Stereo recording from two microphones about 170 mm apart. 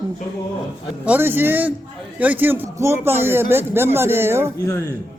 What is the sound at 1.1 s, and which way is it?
Speech, 10° right (ahead or behind).